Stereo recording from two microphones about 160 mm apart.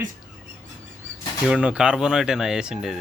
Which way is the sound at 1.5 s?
5° right (ahead or behind).